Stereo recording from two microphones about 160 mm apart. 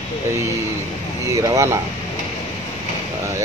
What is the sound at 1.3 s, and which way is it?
Speech, 20° right (ahead or behind).